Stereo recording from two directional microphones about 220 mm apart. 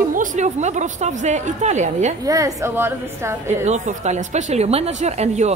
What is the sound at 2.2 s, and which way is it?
A woman's voice, 15° right (ahead or behind).